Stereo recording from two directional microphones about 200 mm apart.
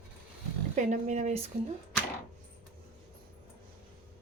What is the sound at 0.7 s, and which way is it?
Speech, 35° right (ahead or behind).